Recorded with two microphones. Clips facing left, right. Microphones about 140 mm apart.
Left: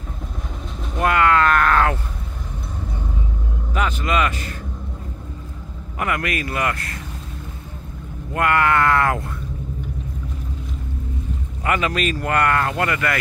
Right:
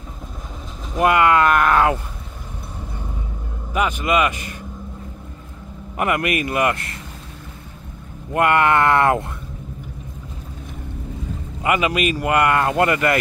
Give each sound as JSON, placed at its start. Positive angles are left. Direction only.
{"t": 1.0, "sound": "speech", "side_deg": -15}
{"t": 3.7, "sound": "speech", "side_deg": -10}
{"t": 5.9, "sound": "speech", "side_deg": -20}
{"t": 8.3, "sound": "speech", "side_deg": -20}
{"t": 11.6, "sound": "speech", "side_deg": -10}